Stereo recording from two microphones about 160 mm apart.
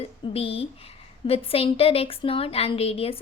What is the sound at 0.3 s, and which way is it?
A woman's voice, 35° left (ahead or behind).